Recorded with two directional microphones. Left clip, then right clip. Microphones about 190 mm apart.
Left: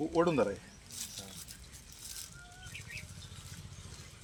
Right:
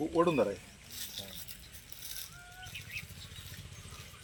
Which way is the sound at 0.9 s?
40° left (ahead or behind).